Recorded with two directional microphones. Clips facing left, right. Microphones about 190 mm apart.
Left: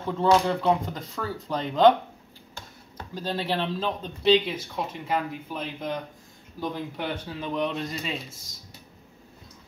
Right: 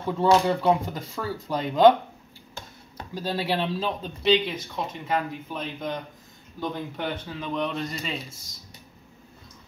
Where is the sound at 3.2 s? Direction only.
10° right (ahead or behind).